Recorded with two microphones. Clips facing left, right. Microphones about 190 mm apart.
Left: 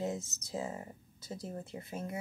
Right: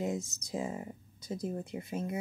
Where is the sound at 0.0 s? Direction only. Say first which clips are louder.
Right 2 dB; 15° right (ahead or behind).